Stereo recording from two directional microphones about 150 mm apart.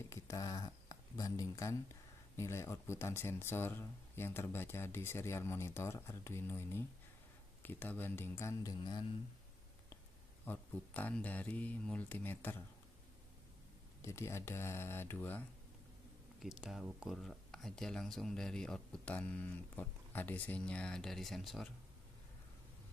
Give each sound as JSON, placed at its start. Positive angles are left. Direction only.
{"t": 0.1, "sound": "speech", "side_deg": 25}
{"t": 10.4, "sound": "speech", "side_deg": 10}
{"t": 14.0, "sound": "speech", "side_deg": 20}
{"t": 16.4, "sound": "speech", "side_deg": -5}